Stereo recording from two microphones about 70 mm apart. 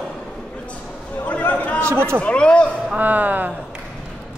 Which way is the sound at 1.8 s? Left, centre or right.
Right.